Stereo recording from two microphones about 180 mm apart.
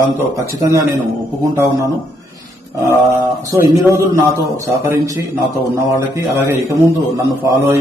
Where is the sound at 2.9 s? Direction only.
15° right (ahead or behind).